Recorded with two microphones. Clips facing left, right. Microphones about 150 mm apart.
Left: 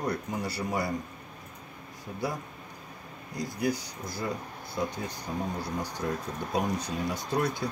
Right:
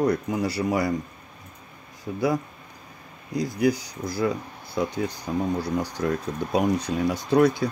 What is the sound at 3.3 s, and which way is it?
Speech, 90° right.